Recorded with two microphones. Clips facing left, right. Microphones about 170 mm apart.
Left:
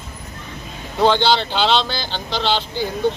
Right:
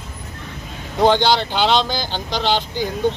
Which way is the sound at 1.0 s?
15° right (ahead or behind).